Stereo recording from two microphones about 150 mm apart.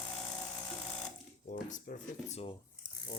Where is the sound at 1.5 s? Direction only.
60° left (ahead or behind).